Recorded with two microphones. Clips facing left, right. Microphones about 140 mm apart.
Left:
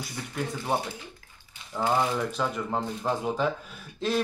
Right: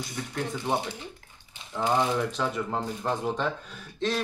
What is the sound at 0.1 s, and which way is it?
Speech, 5° left (ahead or behind).